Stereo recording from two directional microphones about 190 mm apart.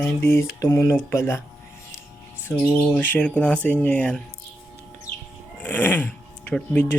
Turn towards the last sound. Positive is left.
turn(degrees=10)  # may be behind; listen again after turning